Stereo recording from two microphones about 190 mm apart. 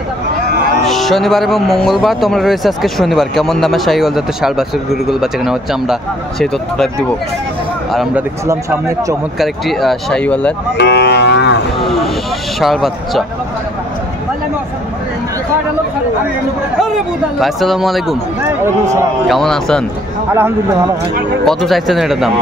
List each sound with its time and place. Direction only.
0.8 s speech: centre (ahead or behind)
7.9 s speech: 5° right (ahead or behind)
9.4 s speech: centre (ahead or behind)
10.8 s cattle: 60° left (ahead or behind)
11.8 s speech: centre (ahead or behind)
16.8 s speech: centre (ahead or behind)
19.2 s speech: centre (ahead or behind)
20.3 s speech: 10° right (ahead or behind)
21.5 s speech: centre (ahead or behind)